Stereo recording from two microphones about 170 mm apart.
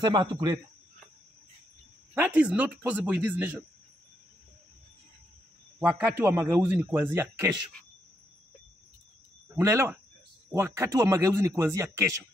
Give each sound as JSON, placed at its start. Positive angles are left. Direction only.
{"t": 0.0, "sound": "a man's voice", "side_deg": -25}
{"t": 2.1, "sound": "a man's voice", "side_deg": -10}
{"t": 5.8, "sound": "a man's voice", "side_deg": -10}
{"t": 9.6, "sound": "a man's voice", "side_deg": -15}